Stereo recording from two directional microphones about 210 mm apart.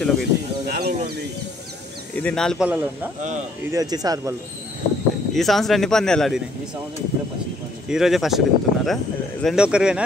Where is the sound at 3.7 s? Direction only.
15° right (ahead or behind).